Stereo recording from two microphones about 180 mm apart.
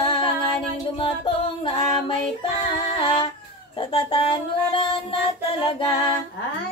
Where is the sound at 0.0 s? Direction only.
30° left (ahead or behind).